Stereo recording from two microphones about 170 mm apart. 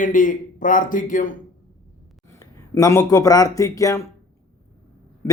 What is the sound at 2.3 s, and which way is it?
A man's voice, 15° left (ahead or behind).